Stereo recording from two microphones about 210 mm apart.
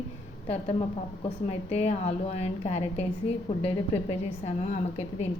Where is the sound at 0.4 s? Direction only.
30° left (ahead or behind).